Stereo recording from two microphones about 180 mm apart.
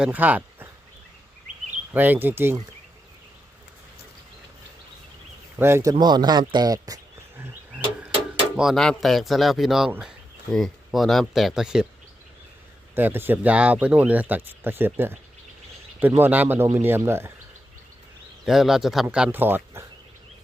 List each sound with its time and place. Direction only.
0.0 s speech: 10° right (ahead or behind)
1.9 s speech: 10° right (ahead or behind)
5.5 s speech: 15° right (ahead or behind)
8.5 s speech: centre (ahead or behind)
13.0 s speech: 10° right (ahead or behind)
18.4 s speech: centre (ahead or behind)